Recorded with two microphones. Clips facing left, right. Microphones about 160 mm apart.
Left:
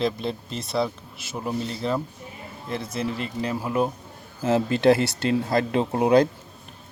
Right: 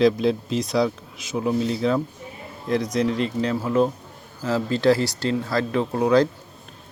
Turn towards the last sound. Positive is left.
turn(degrees=20)  # may be behind; listen again after turning